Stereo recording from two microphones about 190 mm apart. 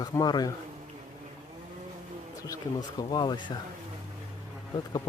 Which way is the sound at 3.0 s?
20° left (ahead or behind).